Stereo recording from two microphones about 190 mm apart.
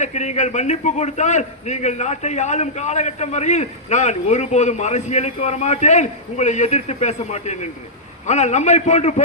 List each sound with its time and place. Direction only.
0.0 s a man's voice: 35° left (ahead or behind)